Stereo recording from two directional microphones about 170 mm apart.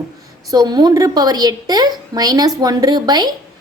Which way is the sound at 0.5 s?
25° right (ahead or behind).